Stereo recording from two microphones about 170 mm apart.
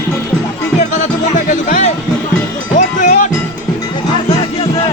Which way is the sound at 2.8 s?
45° left (ahead or behind).